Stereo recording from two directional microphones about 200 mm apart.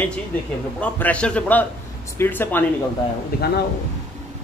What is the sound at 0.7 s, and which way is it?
A man's voice, 5° left (ahead or behind).